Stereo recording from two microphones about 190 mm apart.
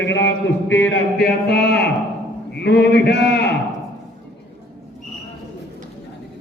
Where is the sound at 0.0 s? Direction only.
70° left (ahead or behind).